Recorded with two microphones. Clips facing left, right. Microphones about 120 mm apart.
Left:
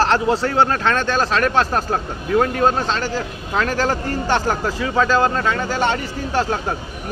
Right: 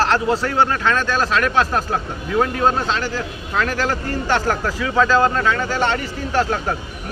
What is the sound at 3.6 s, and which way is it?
Speech, 35° left (ahead or behind).